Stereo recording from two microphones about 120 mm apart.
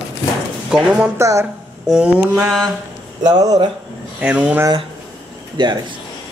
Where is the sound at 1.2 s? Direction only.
25° right (ahead or behind).